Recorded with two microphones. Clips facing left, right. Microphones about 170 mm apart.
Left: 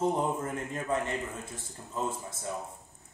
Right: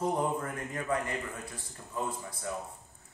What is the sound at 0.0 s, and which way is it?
Speech, 25° left (ahead or behind).